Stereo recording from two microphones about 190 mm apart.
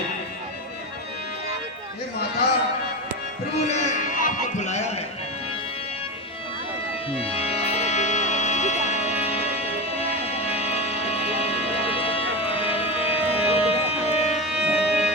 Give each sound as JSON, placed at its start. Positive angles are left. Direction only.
{"t": 3.5, "sound": "a sound", "side_deg": 35}
{"t": 7.2, "sound": "music", "side_deg": 30}
{"t": 14.4, "sound": "music", "side_deg": -5}